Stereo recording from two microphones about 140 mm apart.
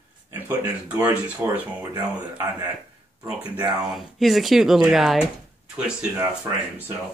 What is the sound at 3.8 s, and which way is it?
Speech, centre (ahead or behind).